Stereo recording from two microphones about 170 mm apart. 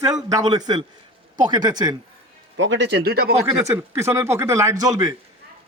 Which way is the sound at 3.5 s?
15° right (ahead or behind).